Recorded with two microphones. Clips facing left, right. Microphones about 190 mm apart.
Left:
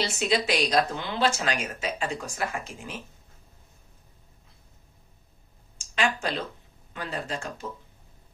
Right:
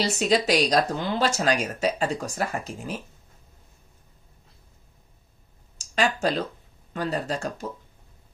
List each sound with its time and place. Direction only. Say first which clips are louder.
0.0 s speech: right 4 dB; 40° right (ahead or behind)
5.9 s speech: right 4 dB; 40° right (ahead or behind)